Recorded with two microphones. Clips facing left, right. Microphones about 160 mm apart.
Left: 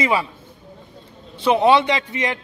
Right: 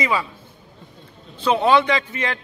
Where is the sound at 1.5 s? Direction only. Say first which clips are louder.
Left 1 dB; 20° left (ahead or behind).